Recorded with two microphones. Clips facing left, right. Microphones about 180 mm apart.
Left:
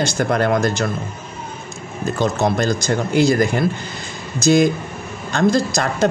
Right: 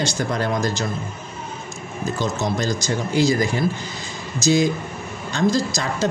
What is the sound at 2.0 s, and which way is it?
Speech, 55° left (ahead or behind).